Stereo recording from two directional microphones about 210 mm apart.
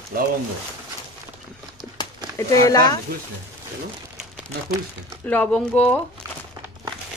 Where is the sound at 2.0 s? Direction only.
20° left (ahead or behind).